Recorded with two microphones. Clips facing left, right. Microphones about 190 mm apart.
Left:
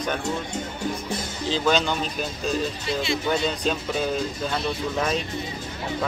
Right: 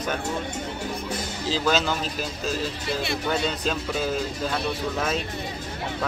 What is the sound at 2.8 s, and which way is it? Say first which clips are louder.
Speech: left 2 dB; 60° right (ahead or behind).